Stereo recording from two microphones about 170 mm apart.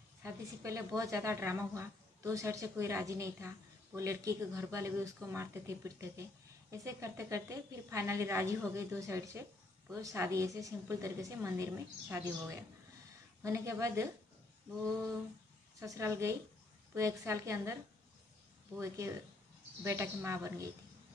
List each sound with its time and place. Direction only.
0.2 s a woman's voice: 20° right (ahead or behind)
15.8 s a woman's voice: 20° right (ahead or behind)
18.8 s a woman's voice: 15° right (ahead or behind)